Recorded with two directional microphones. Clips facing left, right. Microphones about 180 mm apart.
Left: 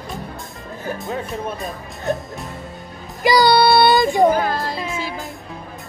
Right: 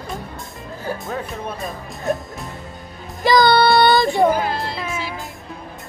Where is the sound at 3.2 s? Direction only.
10° left (ahead or behind).